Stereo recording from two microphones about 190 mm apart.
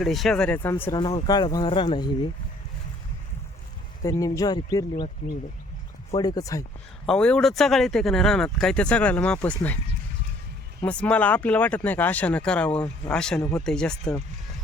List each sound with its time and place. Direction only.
0.0 s speech: centre (ahead or behind); by 2.3 s 25° left (ahead or behind)
4.0 s speech: 15° left (ahead or behind)
6.1 s speech: 20° left (ahead or behind)
7.1 s speech: 5° left (ahead or behind)
10.8 s speech: 10° left (ahead or behind)